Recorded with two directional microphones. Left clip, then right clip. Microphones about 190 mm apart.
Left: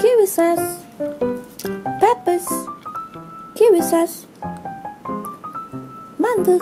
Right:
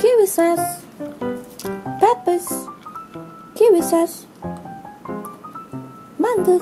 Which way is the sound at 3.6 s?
Centre (ahead or behind).